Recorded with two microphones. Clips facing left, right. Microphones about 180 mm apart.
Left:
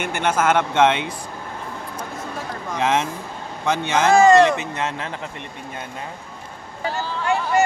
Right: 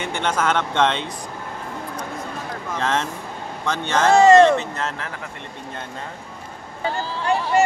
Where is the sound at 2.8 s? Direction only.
10° left (ahead or behind).